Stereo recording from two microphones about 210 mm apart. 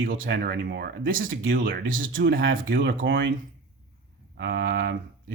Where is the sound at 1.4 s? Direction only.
65° right (ahead or behind).